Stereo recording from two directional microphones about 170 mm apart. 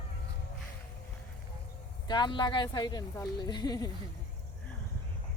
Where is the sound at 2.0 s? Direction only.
25° left (ahead or behind).